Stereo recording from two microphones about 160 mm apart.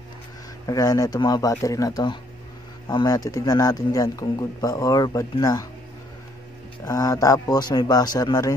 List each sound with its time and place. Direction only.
0.7 s speech: 20° left (ahead or behind)
6.8 s speech: 20° left (ahead or behind)